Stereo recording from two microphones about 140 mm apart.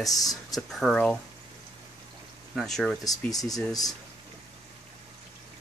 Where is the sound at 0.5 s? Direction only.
Centre (ahead or behind).